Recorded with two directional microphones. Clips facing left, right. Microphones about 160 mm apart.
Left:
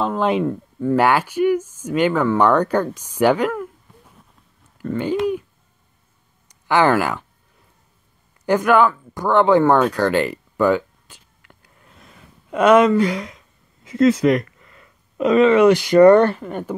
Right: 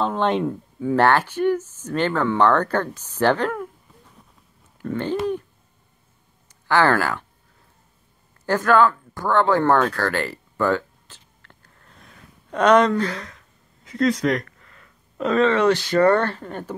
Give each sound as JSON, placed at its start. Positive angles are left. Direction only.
{"t": 0.0, "sound": "speech", "side_deg": 5}
{"t": 0.9, "sound": "speech", "side_deg": 10}
{"t": 4.7, "sound": "speech", "side_deg": 5}
{"t": 6.7, "sound": "speech", "side_deg": 15}
{"t": 8.5, "sound": "speech", "side_deg": 15}
{"t": 9.1, "sound": "a sound", "side_deg": 15}
{"t": 13.8, "sound": "speech", "side_deg": 5}